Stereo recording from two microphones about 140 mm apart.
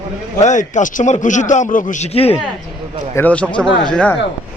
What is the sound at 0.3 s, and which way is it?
A man's voice, 60° left (ahead or behind).